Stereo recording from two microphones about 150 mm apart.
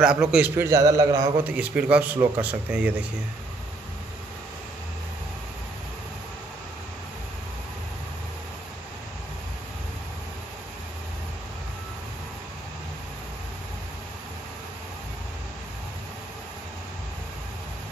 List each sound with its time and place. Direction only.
0.0 s a man's voice: 5° right (ahead or behind)
0.6 s a man's voice: 20° right (ahead or behind)
1.4 s a man's voice: 10° right (ahead or behind)